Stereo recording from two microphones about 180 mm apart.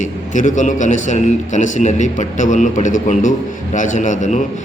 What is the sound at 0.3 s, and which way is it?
A man's voice, 45° left (ahead or behind).